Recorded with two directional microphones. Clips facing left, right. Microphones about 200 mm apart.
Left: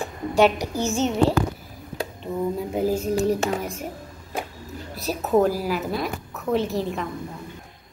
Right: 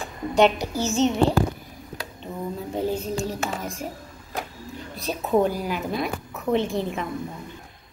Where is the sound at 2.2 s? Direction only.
5° left (ahead or behind).